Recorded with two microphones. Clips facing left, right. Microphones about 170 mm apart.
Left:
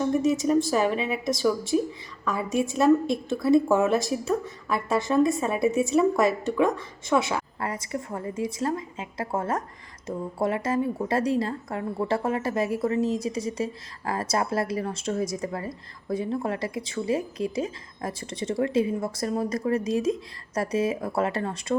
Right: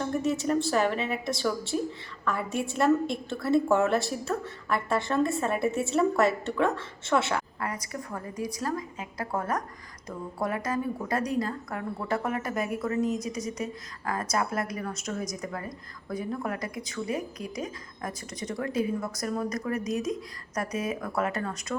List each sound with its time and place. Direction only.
0.0 s a sound: 15° left (ahead or behind)
0.7 s a woman's voice: 15° left (ahead or behind)
7.6 s a woman's voice: 25° left (ahead or behind)